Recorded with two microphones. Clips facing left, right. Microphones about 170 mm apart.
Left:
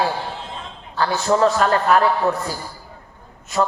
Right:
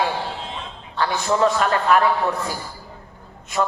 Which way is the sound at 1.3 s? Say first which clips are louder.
Left 3 dB; 35° left (ahead or behind).